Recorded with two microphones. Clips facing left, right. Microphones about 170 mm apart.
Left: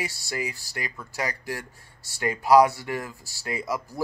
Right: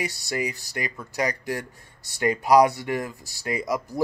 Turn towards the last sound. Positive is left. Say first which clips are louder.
# right 3 dB
turn(degrees=-15)  # may be behind; listen again after turning